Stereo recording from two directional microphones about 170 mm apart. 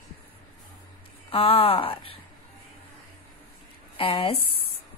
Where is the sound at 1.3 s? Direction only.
35° left (ahead or behind).